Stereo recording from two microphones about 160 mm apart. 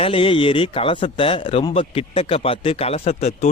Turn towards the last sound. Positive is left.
turn(degrees=45)  # may be behind; listen again after turning